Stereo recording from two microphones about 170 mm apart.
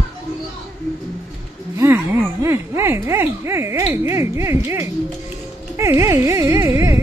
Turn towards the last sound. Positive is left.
turn(degrees=-15)  # may be behind; listen again after turning